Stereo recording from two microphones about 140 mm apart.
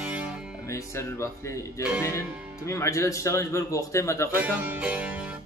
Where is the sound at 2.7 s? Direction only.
20° left (ahead or behind).